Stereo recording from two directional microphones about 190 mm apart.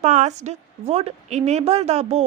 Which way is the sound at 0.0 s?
40° right (ahead or behind).